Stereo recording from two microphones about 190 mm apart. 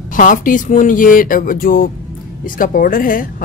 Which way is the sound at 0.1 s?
45° left (ahead or behind).